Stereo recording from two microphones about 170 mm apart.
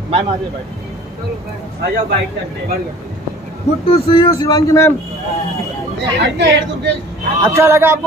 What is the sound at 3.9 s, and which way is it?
Speech, 30° left (ahead or behind).